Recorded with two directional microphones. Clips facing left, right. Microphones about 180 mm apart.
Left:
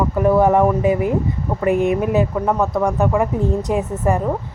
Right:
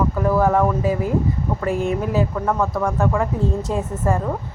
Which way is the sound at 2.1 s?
20° left (ahead or behind).